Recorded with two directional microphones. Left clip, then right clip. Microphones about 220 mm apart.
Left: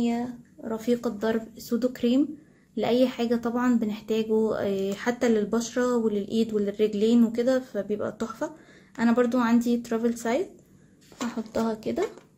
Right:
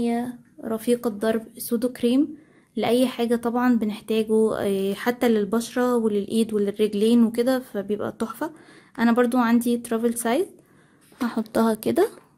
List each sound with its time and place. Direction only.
0.0 s a woman's voice: 50° right (ahead or behind); by 10.4 s 35° right (ahead or behind)
11.2 s speech: 45° right (ahead or behind)